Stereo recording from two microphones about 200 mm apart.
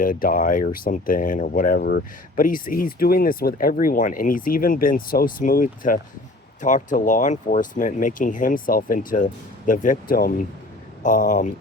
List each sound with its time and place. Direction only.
0.0 s speech: 45° left (ahead or behind)